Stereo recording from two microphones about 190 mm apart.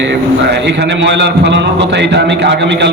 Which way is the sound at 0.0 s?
65° right (ahead or behind).